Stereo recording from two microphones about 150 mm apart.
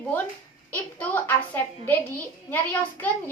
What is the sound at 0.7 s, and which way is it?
A woman's voice, 10° left (ahead or behind).